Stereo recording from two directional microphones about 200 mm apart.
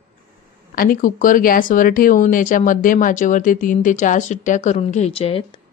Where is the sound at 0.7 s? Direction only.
45° left (ahead or behind); by 5.6 s 30° left (ahead or behind).